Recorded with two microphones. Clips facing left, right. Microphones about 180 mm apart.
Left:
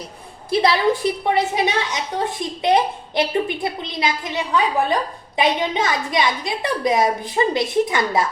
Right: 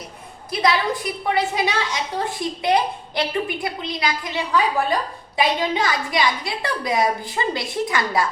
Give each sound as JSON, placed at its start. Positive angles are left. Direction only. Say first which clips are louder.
{"t": 0.5, "sound": "a woman's voice", "louder": "left 4 dB", "side_deg": 30}